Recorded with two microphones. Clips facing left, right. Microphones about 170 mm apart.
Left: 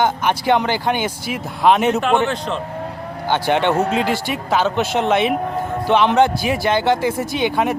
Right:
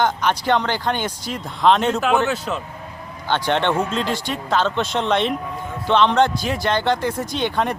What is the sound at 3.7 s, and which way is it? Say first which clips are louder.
Speech: left 4 dB; 65° left (ahead or behind).